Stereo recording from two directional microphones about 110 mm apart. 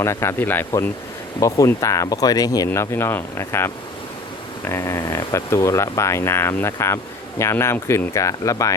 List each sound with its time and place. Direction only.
0.0 s speech: 25° left (ahead or behind)
1.4 s speech: 30° left (ahead or behind)
2.6 s speech: 20° left (ahead or behind)